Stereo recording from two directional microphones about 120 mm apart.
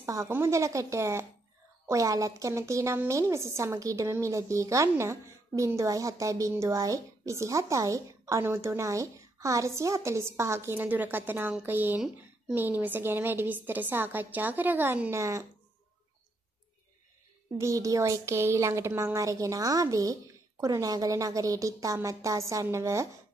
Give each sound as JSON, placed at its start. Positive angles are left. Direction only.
{"t": 0.0, "sound": "a woman's voice", "side_deg": -25}
{"t": 17.6, "sound": "a woman's voice", "side_deg": -25}